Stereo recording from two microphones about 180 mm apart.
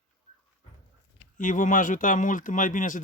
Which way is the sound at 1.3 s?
45° left (ahead or behind).